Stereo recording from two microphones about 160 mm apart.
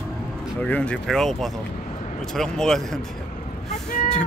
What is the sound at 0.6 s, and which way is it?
Speech, 10° left (ahead or behind).